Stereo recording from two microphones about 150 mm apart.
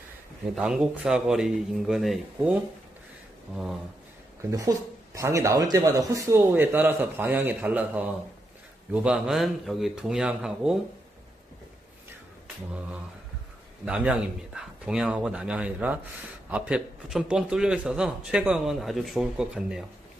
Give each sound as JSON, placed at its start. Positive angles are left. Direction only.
{"t": 0.6, "sound": "a man's voice", "side_deg": -5}
{"t": 4.4, "sound": "a man's voice", "side_deg": -20}
{"t": 13.8, "sound": "a man's voice", "side_deg": -5}